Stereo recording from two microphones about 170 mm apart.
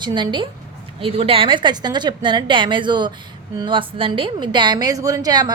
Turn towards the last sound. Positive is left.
turn(degrees=-25)  # may be behind; listen again after turning